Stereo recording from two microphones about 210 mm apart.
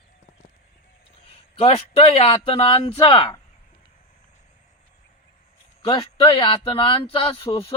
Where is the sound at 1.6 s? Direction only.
25° left (ahead or behind).